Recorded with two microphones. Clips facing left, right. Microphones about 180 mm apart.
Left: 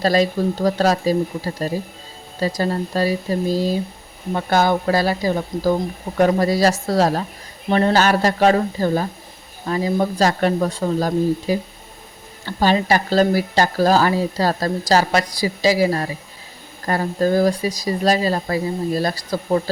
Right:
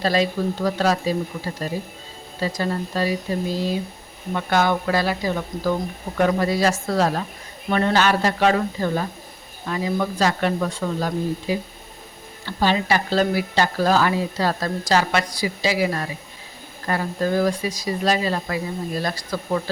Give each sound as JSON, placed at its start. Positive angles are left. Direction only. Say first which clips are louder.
{"t": 0.0, "sound": "speech", "louder": "left 3 dB", "side_deg": 40}